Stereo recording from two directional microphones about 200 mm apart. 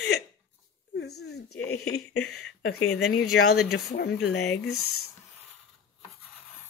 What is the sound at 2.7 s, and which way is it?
Speech, 90° left.